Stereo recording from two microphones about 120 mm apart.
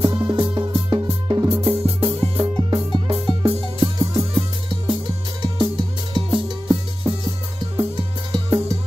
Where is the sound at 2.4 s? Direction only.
45° right (ahead or behind).